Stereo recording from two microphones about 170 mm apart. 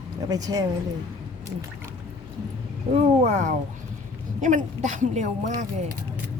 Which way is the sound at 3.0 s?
40° right (ahead or behind).